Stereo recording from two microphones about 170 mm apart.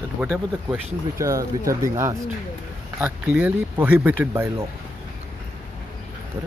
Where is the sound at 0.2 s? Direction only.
5° right (ahead or behind).